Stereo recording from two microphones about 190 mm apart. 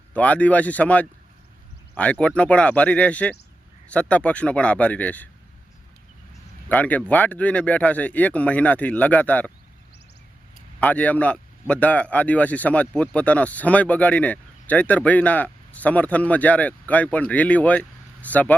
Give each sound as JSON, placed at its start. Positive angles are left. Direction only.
{"t": 0.1, "sound": "speech", "side_deg": 5}
{"t": 6.7, "sound": "speech", "side_deg": 10}
{"t": 10.8, "sound": "speech", "side_deg": 5}